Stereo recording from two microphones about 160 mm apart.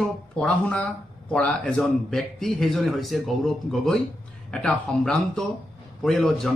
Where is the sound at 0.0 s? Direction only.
5° left (ahead or behind).